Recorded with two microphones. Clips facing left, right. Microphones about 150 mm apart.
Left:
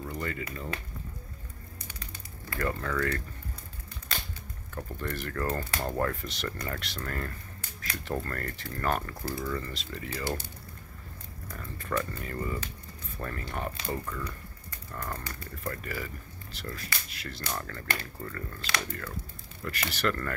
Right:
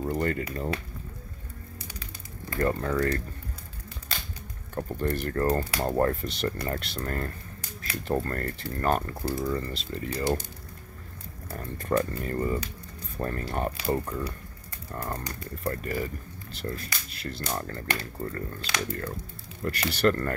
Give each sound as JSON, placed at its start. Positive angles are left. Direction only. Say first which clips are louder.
{"t": 0.0, "sound": "speech", "louder": "right 7 dB", "side_deg": -45}
{"t": 2.6, "sound": "speech", "louder": "right 5 dB", "side_deg": -30}
{"t": 4.7, "sound": "speech", "louder": "right 7 dB", "side_deg": -35}
{"t": 11.5, "sound": "speech", "louder": "right 6 dB", "side_deg": -40}